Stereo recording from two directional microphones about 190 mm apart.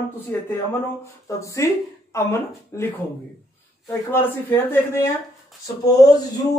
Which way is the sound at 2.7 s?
15° left (ahead or behind).